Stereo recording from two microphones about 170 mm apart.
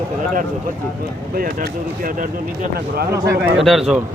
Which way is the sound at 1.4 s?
55° right (ahead or behind).